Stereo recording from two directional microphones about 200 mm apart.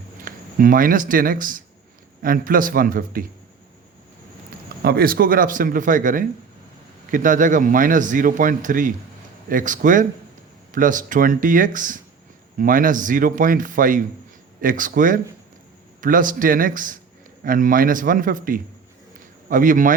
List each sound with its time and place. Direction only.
0.3 s speech: 45° right (ahead or behind)
4.8 s a man's voice: 50° right (ahead or behind)